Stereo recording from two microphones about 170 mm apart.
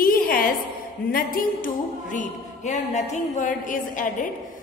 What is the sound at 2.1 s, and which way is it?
A woman's voice, 45° left (ahead or behind).